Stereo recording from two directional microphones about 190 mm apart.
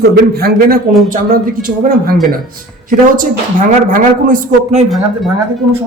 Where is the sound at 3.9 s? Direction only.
45° right (ahead or behind).